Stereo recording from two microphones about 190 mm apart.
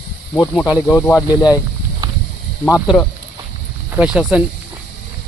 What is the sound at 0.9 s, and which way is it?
Speech, 15° left (ahead or behind).